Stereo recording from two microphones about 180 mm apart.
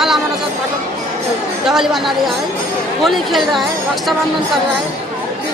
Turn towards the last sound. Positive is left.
turn(degrees=0)  # may be behind; listen again after turning